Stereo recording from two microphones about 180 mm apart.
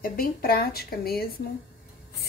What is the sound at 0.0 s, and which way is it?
Speech, 55° left (ahead or behind).